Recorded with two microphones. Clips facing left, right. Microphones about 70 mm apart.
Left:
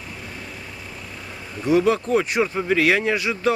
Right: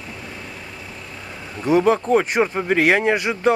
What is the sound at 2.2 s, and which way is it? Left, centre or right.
Speech, right.